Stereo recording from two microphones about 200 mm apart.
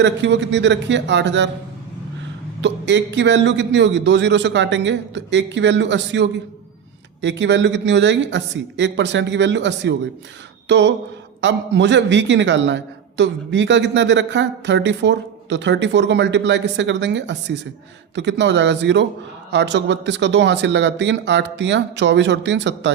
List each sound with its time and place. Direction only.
0.0 s a man's voice: 60° right (ahead or behind)
2.6 s a man's voice: 60° right (ahead or behind)